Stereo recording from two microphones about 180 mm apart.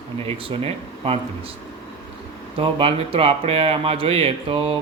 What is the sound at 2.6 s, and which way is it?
Speech, 30° right (ahead or behind).